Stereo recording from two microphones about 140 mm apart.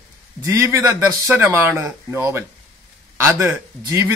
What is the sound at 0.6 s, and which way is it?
A man's voice, 20° right (ahead or behind).